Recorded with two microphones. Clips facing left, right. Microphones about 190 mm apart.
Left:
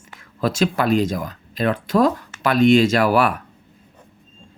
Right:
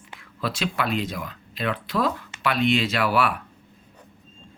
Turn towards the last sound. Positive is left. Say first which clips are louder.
# left 6 dB
turn(degrees=45)  # may be behind; listen again after turning